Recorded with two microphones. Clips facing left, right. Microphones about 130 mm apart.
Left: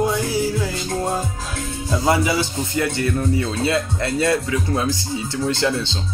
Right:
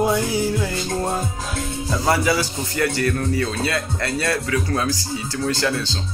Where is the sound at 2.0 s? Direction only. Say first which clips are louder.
Left 1 dB; 20° left (ahead or behind).